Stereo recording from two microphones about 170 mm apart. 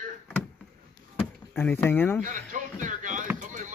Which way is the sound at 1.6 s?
10° left (ahead or behind).